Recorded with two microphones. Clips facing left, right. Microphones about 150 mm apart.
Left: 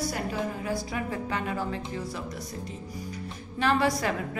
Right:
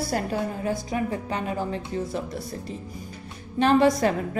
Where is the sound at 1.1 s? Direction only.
25° right (ahead or behind).